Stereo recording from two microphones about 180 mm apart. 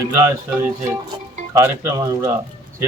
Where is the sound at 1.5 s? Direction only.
15° right (ahead or behind).